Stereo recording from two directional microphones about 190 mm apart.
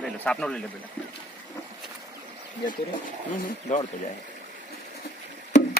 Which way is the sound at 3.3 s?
45° left (ahead or behind).